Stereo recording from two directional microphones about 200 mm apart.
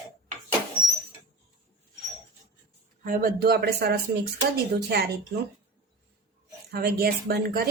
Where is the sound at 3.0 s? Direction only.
45° right (ahead or behind).